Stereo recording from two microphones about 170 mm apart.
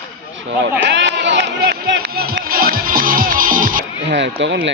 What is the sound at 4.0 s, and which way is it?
Sheep, 90° right.